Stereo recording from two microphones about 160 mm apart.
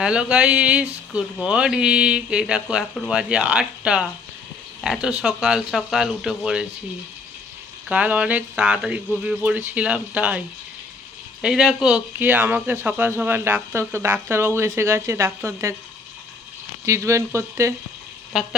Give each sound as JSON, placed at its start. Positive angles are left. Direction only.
{"t": 0.0, "sound": "speech", "side_deg": -5}
{"t": 7.9, "sound": "speech", "side_deg": -10}
{"t": 11.4, "sound": "speech", "side_deg": -5}
{"t": 16.8, "sound": "speech", "side_deg": -15}